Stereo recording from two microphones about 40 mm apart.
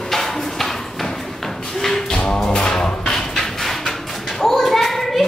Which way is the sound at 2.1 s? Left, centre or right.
Left.